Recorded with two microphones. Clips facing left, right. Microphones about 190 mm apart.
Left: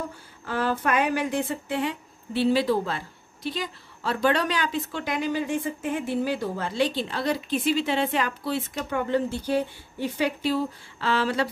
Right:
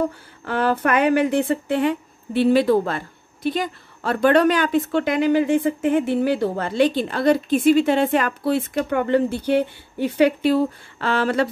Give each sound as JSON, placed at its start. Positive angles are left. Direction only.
{"t": 0.5, "sound": "a woman's voice", "side_deg": -65}